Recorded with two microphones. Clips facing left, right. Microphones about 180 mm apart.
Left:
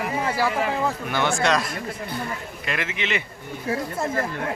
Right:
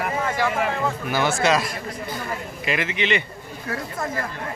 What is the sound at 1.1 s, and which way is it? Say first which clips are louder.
Speech: right 3 dB; 5° right (ahead or behind).